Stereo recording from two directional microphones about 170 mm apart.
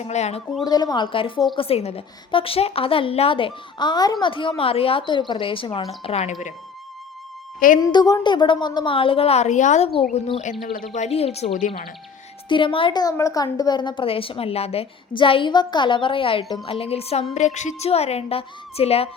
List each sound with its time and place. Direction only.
0.0 s a woman's voice: 40° left (ahead or behind)
0.6 s a woman's voice: 25° left (ahead or behind)
7.8 s a woman's voice: 20° left (ahead or behind); by 9.9 s 45° left (ahead or behind)
10.9 s a woman's voice: 40° left (ahead or behind)